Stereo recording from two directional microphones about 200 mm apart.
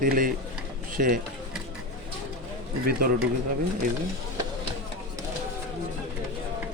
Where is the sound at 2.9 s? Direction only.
50° right (ahead or behind).